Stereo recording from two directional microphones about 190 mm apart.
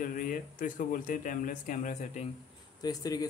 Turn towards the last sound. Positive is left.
turn(degrees=20)  # may be behind; listen again after turning